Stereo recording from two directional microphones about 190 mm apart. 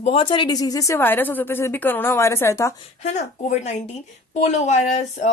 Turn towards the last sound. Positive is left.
turn(degrees=35)  # may be behind; listen again after turning